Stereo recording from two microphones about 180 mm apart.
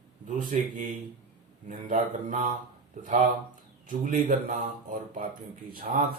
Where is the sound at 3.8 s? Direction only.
45° right (ahead or behind).